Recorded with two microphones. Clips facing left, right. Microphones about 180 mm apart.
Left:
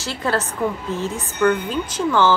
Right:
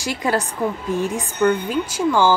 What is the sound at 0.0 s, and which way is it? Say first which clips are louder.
A woman's voice: right 1 dB; 15° right (ahead or behind).